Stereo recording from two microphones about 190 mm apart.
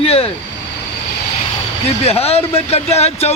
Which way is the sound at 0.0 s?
30° left (ahead or behind).